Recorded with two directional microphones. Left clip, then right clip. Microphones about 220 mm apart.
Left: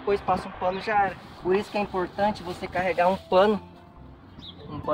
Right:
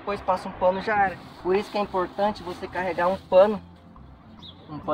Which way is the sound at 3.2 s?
45° left (ahead or behind).